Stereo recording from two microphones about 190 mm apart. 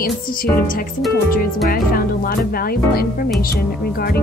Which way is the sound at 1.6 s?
50° left (ahead or behind).